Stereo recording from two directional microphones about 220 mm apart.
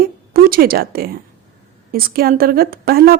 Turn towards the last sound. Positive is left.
turn(degrees=-45)  # may be behind; listen again after turning